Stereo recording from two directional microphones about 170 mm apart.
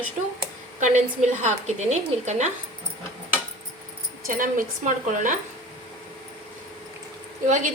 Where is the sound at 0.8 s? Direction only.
45° right (ahead or behind).